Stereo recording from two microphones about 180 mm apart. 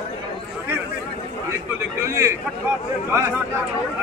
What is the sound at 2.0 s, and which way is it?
Speech, 15° right (ahead or behind).